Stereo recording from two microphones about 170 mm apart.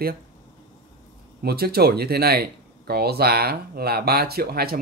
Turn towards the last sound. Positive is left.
turn(degrees=-65)  # may be behind; listen again after turning